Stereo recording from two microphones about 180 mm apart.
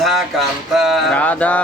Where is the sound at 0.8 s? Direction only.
5° left (ahead or behind).